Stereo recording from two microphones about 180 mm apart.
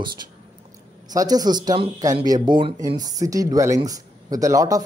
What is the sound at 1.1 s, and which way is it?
Speech, 20° right (ahead or behind).